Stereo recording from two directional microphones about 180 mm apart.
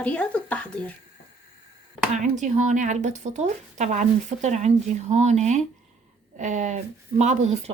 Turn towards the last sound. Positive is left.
turn(degrees=-40)  # may be behind; listen again after turning